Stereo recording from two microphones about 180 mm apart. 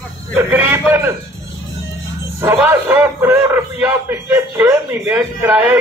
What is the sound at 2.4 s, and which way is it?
A man's voice, 10° right (ahead or behind).